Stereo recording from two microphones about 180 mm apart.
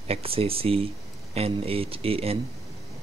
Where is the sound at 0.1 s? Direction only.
30° right (ahead or behind).